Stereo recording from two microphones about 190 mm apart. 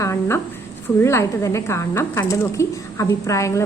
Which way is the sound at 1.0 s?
15° left (ahead or behind).